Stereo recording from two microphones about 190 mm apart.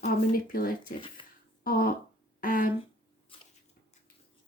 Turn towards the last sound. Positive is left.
turn(degrees=30)  # may be behind; listen again after turning